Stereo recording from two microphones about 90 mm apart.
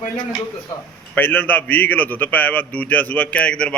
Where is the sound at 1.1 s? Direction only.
20° left (ahead or behind).